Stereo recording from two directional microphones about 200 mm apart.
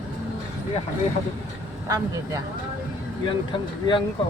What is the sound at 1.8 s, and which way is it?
Speech, 15° right (ahead or behind).